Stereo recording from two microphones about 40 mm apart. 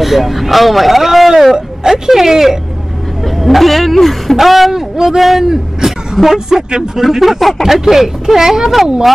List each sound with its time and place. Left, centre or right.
0.0 s speech: centre
3.3 s speech: centre